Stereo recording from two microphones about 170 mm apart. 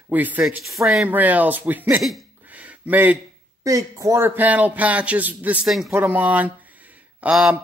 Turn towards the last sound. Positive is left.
turn(degrees=-5)  # may be behind; listen again after turning